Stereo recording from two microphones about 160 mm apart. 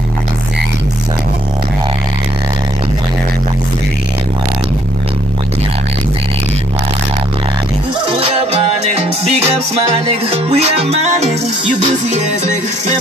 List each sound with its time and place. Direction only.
8.1 s music: 35° right (ahead or behind)
10.3 s music: 40° right (ahead or behind)